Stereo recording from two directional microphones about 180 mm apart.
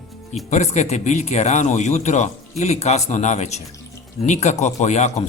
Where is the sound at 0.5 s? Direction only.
40° left (ahead or behind).